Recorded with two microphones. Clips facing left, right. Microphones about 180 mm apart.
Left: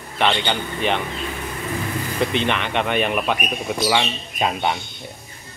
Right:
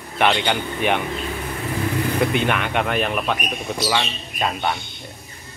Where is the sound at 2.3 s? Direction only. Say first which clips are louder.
Right 1 dB; 5° right (ahead or behind).